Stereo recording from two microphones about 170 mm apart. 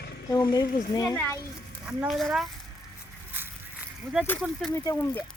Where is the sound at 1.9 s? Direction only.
Centre (ahead or behind).